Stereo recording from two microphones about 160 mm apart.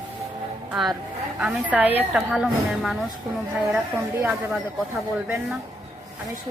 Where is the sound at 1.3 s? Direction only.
Centre (ahead or behind).